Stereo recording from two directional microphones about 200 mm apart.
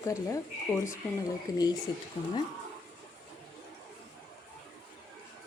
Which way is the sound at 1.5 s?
20° left (ahead or behind).